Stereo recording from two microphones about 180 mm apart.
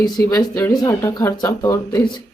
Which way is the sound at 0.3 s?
15° left (ahead or behind).